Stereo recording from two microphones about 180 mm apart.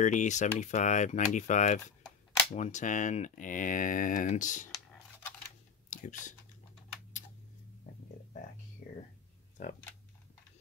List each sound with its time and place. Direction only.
0.0 s speech: 45° left (ahead or behind)
5.9 s a sound: 45° left (ahead or behind)
8.8 s whispering: 45° left (ahead or behind)
9.6 s speech: 40° left (ahead or behind)